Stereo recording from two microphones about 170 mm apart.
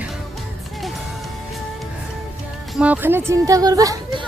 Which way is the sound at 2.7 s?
10° right (ahead or behind).